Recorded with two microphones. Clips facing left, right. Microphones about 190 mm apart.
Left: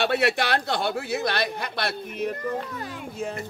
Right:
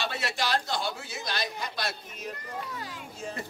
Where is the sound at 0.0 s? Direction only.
60° left (ahead or behind).